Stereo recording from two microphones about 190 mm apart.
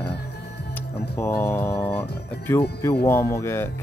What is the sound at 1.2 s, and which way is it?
Speech, 10° left (ahead or behind).